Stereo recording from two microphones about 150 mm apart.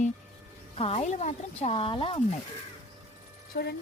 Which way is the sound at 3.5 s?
90° left.